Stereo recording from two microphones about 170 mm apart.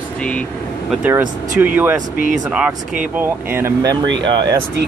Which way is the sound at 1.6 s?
10° right (ahead or behind).